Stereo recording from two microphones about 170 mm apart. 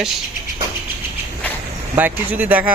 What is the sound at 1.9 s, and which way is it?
Speech, 10° right (ahead or behind).